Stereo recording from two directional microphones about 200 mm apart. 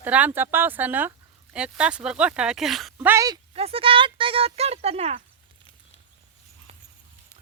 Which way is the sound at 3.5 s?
30° right (ahead or behind).